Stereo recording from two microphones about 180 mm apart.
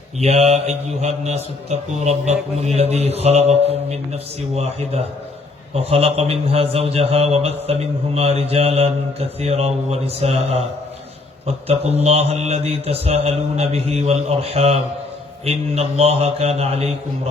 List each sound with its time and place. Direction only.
0.2 s a man's voice: 35° right (ahead or behind)